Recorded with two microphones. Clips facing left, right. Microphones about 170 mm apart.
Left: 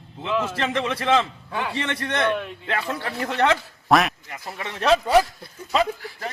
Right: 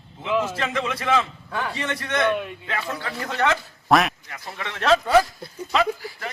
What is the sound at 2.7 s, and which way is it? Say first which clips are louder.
Speech: left 5 dB; 25° left (ahead or behind).